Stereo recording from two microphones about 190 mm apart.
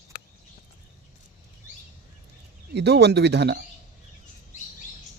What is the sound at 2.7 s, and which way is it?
Speech, 60° right (ahead or behind).